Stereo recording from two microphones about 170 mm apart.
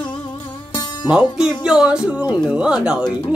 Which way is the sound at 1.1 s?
5° right (ahead or behind).